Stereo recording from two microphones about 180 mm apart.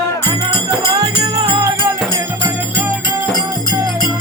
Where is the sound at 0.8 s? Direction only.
25° right (ahead or behind).